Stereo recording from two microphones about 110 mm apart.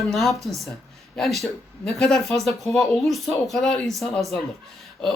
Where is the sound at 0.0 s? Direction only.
Centre (ahead or behind).